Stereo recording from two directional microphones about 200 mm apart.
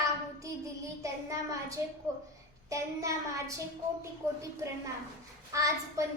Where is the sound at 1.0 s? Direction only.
15° right (ahead or behind).